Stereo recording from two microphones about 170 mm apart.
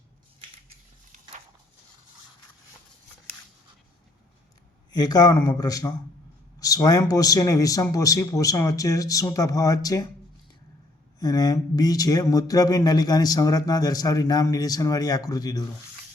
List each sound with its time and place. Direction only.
4.9 s speech: 25° left (ahead or behind)
11.2 s speech: 20° left (ahead or behind)